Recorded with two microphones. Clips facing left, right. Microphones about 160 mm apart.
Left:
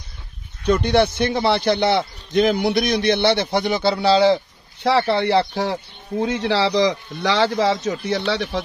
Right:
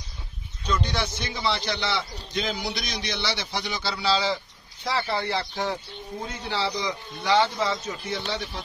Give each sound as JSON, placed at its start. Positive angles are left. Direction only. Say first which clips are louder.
{"t": 0.7, "sound": "a man's voice", "louder": "left 11 dB", "side_deg": 60}
{"t": 4.8, "sound": "speech", "louder": "left 10 dB", "side_deg": 70}